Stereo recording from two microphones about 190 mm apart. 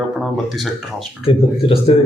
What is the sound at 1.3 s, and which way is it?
Speech, 30° left (ahead or behind).